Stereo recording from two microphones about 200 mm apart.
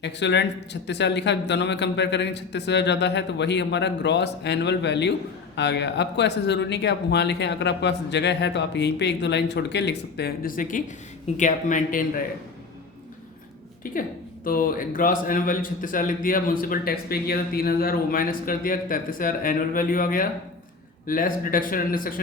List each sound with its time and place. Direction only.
0.0 s a man's voice: 60° left (ahead or behind); by 12.2 s 45° left (ahead or behind)
13.8 s a man's voice: 45° left (ahead or behind)